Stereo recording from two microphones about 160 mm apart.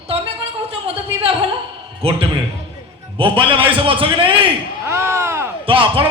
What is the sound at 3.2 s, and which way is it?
Speech, 35° right (ahead or behind).